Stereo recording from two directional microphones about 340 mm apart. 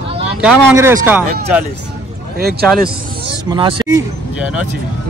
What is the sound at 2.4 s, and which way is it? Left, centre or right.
Speech, right.